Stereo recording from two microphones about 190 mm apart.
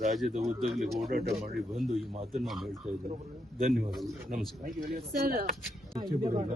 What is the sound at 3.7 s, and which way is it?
Speech, centre (ahead or behind).